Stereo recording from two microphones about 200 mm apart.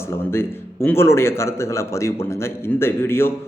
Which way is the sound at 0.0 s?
10° left (ahead or behind).